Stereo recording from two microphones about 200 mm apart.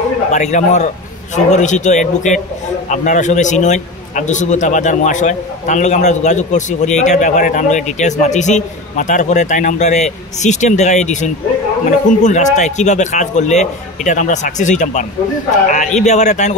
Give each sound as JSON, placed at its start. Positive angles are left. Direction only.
{"t": 0.3, "sound": "a man's voice", "side_deg": 35}